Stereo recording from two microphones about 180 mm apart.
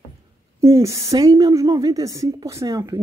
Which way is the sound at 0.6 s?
15° right (ahead or behind).